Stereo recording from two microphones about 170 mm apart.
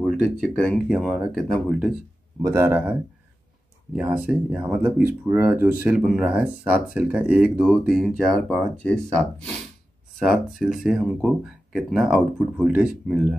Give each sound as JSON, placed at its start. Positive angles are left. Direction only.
{"t": 0.0, "sound": "speech", "side_deg": 5}
{"t": 2.4, "sound": "speech", "side_deg": -15}
{"t": 4.3, "sound": "speech", "side_deg": -5}